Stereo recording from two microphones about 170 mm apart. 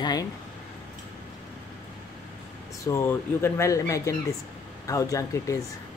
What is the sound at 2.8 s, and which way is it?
Speech, 15° left (ahead or behind).